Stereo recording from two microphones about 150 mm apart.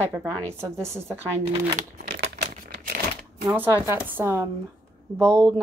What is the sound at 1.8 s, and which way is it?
Crumpling, 85° right.